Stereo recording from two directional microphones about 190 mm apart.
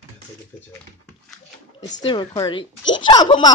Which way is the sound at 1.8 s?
40° left (ahead or behind).